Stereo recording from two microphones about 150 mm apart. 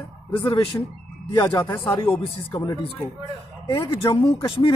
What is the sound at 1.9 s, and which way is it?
Speech, 20° left (ahead or behind).